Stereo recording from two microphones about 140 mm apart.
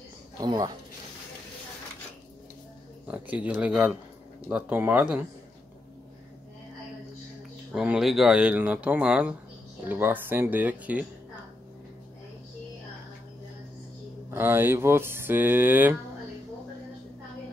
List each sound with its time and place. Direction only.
0.4 s speech: 30° right (ahead or behind)
3.1 s speech: 10° right (ahead or behind)
7.7 s speech: 5° right (ahead or behind)
14.3 s speech: 15° right (ahead or behind)